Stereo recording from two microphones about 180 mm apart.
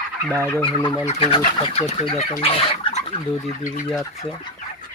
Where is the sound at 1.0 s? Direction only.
30° left (ahead or behind).